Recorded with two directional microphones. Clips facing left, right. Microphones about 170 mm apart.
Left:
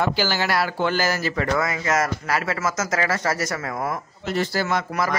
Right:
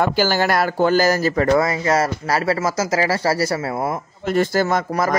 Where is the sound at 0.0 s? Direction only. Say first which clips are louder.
Right 5 dB; 45° right (ahead or behind); by 3.5 s 30° right (ahead or behind).